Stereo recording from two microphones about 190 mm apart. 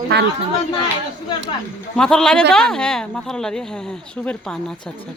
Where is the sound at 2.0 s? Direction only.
5° left (ahead or behind).